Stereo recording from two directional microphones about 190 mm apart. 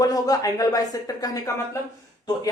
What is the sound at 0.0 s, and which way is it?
Speech, 20° left (ahead or behind).